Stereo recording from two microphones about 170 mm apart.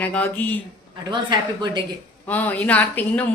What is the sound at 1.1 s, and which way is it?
Speech, 25° right (ahead or behind).